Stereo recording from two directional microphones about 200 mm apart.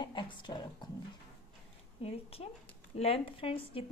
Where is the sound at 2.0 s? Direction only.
30° left (ahead or behind).